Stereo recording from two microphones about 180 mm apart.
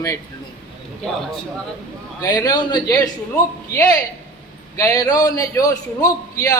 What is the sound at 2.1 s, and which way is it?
A man's voice, 20° left (ahead or behind).